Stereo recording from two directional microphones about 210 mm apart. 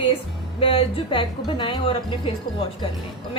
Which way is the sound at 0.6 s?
25° left (ahead or behind).